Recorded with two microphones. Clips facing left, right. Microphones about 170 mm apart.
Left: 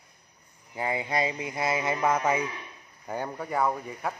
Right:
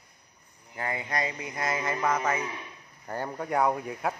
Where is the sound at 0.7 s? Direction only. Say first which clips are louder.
Left 3 dB; 15° left (ahead or behind).